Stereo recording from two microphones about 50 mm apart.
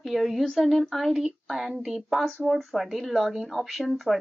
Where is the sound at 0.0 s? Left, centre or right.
Centre.